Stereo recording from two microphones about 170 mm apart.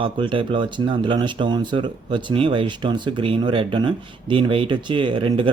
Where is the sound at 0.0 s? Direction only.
30° right (ahead or behind).